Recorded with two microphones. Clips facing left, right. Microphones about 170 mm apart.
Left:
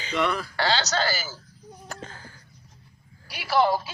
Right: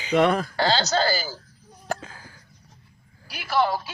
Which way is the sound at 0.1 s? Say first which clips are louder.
Right 7 dB; 50° right (ahead or behind).